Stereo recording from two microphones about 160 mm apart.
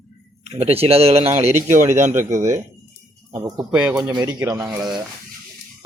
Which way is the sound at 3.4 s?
25° right (ahead or behind).